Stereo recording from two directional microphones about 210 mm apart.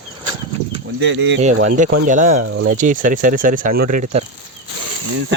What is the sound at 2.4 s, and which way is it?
Speech, 65° right (ahead or behind).